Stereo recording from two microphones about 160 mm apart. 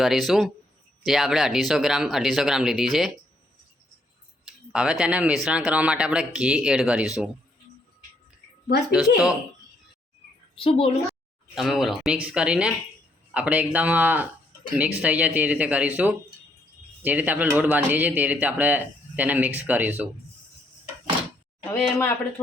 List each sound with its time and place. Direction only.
0.0 s speech: centre (ahead or behind)
4.7 s speech: 5° right (ahead or behind)
8.9 s speech: 5° right (ahead or behind)
10.6 s a woman's voice: 35° left (ahead or behind)
11.5 s speech: centre (ahead or behind)
21.7 s speech: 15° left (ahead or behind)